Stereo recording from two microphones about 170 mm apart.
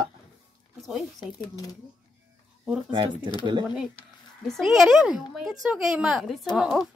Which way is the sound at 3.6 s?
5° right (ahead or behind).